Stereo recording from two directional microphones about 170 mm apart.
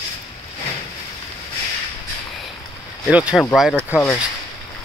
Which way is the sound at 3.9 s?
10° left (ahead or behind).